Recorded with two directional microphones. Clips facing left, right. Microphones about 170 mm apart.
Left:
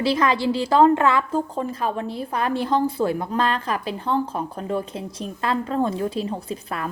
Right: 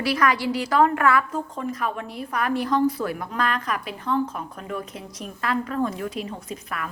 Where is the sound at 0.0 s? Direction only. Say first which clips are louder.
Left 2 dB; 25° left (ahead or behind).